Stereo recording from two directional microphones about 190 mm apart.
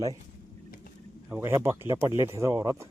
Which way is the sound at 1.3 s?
15° right (ahead or behind).